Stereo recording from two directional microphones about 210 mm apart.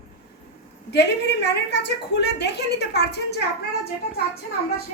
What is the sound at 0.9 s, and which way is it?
A woman's voice, 55° left (ahead or behind).